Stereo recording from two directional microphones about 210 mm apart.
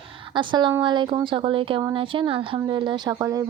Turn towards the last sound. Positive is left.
turn(degrees=-15)  # may be behind; listen again after turning